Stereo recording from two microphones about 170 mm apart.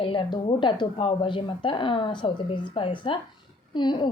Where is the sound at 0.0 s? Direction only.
30° left (ahead or behind).